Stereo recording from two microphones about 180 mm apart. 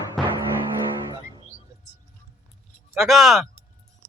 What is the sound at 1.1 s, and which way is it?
Music, 25° right (ahead or behind).